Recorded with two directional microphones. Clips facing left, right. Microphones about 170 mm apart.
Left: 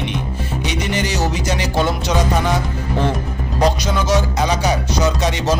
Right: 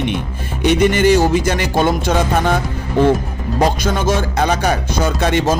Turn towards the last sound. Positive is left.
turn(degrees=-55)  # may be behind; listen again after turning